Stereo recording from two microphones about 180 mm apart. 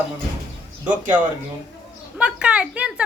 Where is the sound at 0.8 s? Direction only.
10° right (ahead or behind).